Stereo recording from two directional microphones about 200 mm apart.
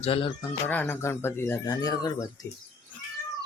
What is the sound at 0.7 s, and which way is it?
Speech, 10° left (ahead or behind).